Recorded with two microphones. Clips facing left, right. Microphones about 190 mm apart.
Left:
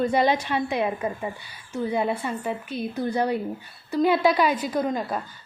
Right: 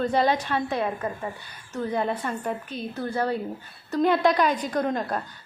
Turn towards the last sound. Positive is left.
turn(degrees=0)  # may be behind; listen again after turning